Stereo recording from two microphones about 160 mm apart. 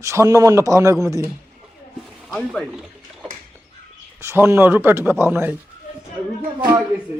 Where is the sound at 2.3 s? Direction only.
5° left (ahead or behind).